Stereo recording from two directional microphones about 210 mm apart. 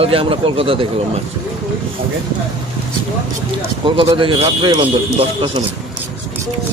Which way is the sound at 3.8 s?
25° right (ahead or behind).